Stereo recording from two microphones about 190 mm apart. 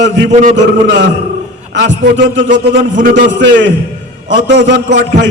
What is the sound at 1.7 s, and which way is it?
A man's voice, 70° right (ahead or behind).